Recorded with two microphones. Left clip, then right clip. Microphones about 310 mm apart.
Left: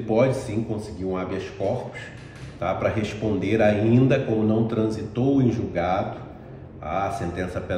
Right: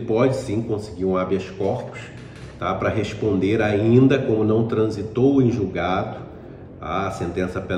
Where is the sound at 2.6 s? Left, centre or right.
Centre.